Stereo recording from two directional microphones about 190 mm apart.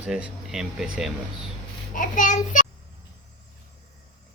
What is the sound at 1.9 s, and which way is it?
Speech, 40° left (ahead or behind).